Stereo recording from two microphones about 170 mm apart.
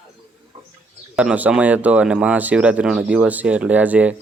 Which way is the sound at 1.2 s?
10° right (ahead or behind).